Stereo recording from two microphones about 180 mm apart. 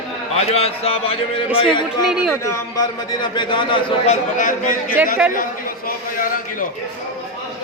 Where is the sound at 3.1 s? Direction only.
25° left (ahead or behind); by 4.9 s 45° left (ahead or behind).